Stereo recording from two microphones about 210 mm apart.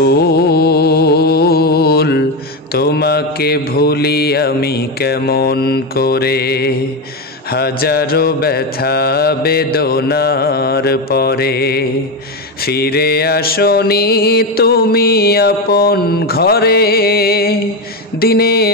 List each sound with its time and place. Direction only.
0.0 s music: 50° left (ahead or behind)
2.7 s mantra: 50° left (ahead or behind)